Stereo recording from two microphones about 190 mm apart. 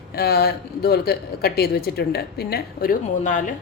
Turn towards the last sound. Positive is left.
turn(degrees=45)  # may be behind; listen again after turning